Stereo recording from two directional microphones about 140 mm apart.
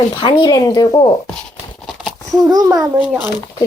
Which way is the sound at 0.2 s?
35° left (ahead or behind).